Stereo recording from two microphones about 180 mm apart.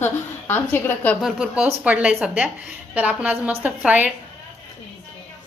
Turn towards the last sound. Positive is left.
turn(degrees=-10)  # may be behind; listen again after turning